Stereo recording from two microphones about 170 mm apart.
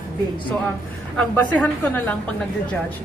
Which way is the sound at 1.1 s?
5° left (ahead or behind).